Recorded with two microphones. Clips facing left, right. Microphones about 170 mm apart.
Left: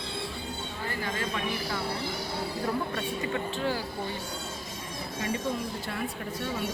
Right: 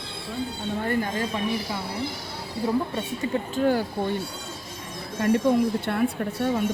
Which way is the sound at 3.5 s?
50° right (ahead or behind).